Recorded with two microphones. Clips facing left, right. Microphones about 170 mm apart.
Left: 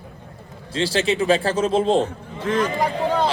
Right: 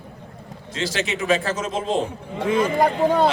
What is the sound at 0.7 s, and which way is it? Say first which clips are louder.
A man's voice: left 5 dB; 30° left (ahead or behind).